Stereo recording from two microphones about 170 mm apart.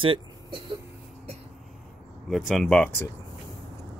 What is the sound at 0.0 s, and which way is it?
Speech, 30° right (ahead or behind).